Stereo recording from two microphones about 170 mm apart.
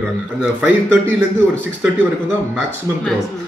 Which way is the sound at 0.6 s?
15° right (ahead or behind).